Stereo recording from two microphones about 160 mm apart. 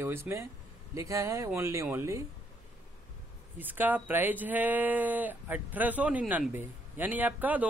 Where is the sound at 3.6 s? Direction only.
10° right (ahead or behind).